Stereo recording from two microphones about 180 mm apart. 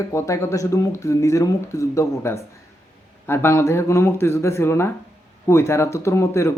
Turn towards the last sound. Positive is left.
turn(degrees=15)  # may be behind; listen again after turning